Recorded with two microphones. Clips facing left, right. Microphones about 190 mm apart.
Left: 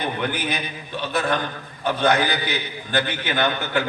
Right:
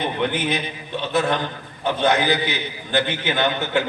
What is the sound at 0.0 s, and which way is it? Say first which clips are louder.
A man's voice: right 3 dB; 25° right (ahead or behind).